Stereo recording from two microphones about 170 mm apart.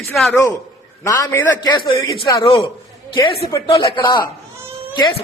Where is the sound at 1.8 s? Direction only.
30° left (ahead or behind).